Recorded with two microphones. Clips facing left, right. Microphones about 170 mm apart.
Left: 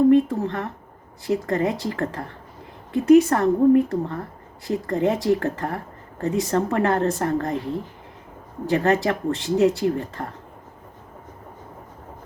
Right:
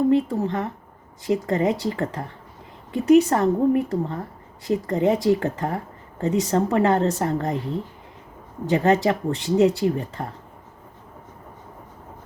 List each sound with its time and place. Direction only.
0.1 s a woman's voice: 15° right (ahead or behind)
8.7 s a woman's voice: 15° right (ahead or behind)